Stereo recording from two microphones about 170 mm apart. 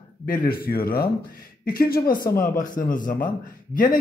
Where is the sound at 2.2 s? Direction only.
15° left (ahead or behind).